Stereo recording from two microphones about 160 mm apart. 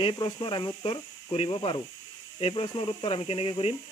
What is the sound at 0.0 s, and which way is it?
Speech, 30° left (ahead or behind).